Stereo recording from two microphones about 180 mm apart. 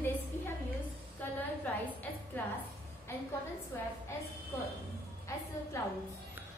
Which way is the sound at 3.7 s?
15° left (ahead or behind).